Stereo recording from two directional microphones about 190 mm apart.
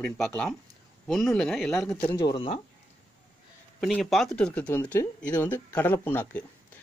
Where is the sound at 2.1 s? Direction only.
25° left (ahead or behind).